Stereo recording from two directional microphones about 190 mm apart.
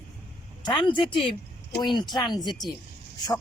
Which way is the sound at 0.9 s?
25° left (ahead or behind).